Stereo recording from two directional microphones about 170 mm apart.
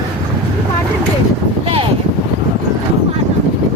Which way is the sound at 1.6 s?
35° right (ahead or behind).